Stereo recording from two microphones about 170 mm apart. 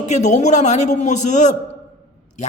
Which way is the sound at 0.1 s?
45° left (ahead or behind).